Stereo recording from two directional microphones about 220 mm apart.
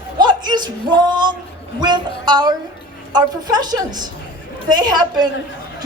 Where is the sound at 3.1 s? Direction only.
20° right (ahead or behind).